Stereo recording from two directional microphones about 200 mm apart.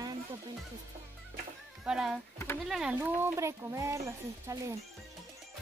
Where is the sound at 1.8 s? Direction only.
5° right (ahead or behind).